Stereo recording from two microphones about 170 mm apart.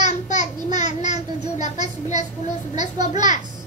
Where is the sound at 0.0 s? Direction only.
45° left (ahead or behind).